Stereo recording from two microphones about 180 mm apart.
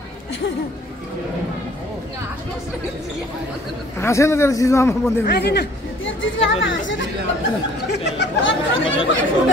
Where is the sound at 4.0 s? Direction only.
15° left (ahead or behind).